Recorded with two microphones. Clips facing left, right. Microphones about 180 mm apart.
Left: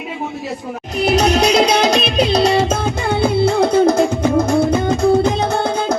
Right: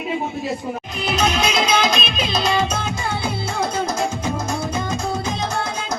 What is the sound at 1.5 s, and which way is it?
Music, 75° left (ahead or behind).